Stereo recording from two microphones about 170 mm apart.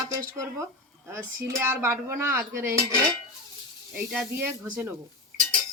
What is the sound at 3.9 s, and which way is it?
Speech, 15° right (ahead or behind).